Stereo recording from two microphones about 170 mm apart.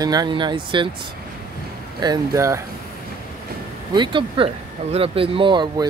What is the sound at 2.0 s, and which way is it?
Speech, 20° right (ahead or behind).